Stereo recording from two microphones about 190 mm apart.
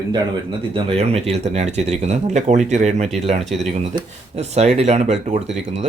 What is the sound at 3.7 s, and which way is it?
Speech, 30° right (ahead or behind).